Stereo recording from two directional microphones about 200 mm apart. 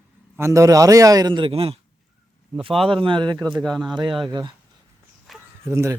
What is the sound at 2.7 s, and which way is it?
Speech, centre (ahead or behind).